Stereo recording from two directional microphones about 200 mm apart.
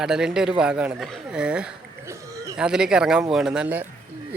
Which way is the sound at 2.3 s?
15° right (ahead or behind).